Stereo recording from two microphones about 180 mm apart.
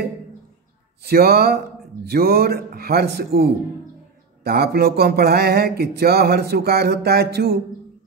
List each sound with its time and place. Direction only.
1.0 s speech: 60° right (ahead or behind)